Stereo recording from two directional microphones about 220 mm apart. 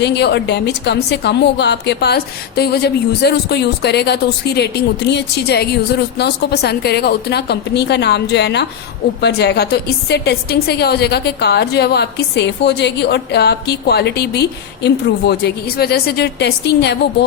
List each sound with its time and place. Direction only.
0.0 s a woman's voice: 50° left (ahead or behind)